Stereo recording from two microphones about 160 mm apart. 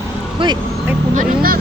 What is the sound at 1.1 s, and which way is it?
Speech, 70° right (ahead or behind).